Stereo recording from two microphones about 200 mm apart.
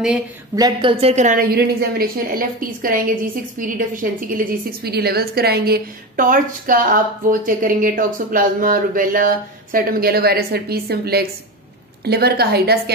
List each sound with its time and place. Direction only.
0.6 s a woman's voice: 20° right (ahead or behind); by 12.9 s 50° right (ahead or behind)